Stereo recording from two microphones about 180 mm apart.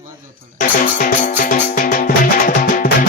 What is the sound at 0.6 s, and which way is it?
Music, 45° left (ahead or behind).